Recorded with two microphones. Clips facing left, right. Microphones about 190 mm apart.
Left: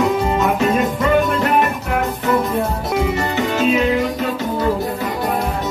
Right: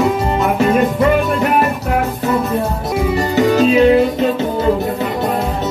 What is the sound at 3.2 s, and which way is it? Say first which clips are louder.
Music: right 6 dB; 35° right (ahead or behind).